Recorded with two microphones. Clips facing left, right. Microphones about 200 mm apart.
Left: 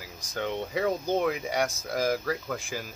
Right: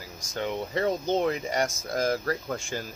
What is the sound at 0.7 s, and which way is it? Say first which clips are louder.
Speech: right 1 dB; 10° left (ahead or behind).